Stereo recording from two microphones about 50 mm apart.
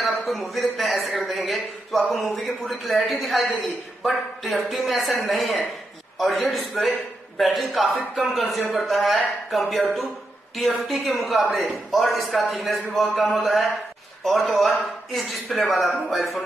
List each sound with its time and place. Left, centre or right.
0.0 s a man's voice: centre
6.7 s a man's voice: centre
7.3 s speech: centre